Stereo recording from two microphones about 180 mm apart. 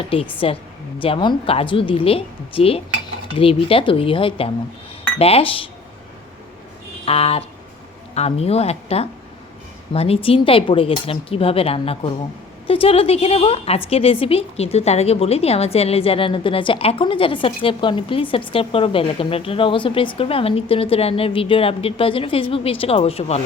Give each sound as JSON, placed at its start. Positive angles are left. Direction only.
{"t": 0.3, "sound": "a woman's voice", "side_deg": 30}
{"t": 7.0, "sound": "a sound", "side_deg": 35}
{"t": 8.1, "sound": "a woman's voice", "side_deg": 35}